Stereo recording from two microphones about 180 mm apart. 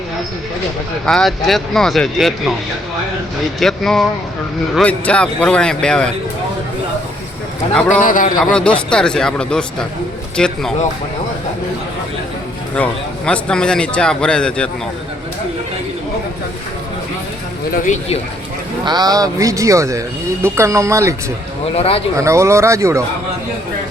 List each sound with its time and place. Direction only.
1.0 s speech: centre (ahead or behind)
3.6 s speech: centre (ahead or behind)
7.7 s speech: 5° left (ahead or behind)
8.0 s speech: 50° left (ahead or behind)
8.9 s speech: 5° left (ahead or behind)
12.7 s speech: 5° left (ahead or behind)
17.7 s speech: 40° left (ahead or behind)
18.9 s speech: 20° right (ahead or behind)
21.8 s speech: 30° left (ahead or behind)
22.2 s speech: 15° right (ahead or behind)